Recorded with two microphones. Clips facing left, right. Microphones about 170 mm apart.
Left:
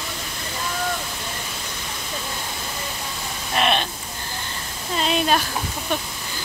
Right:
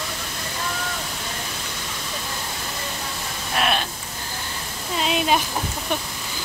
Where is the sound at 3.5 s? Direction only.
Centre (ahead or behind).